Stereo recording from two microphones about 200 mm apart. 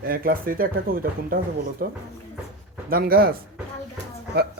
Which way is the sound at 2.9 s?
50° right (ahead or behind).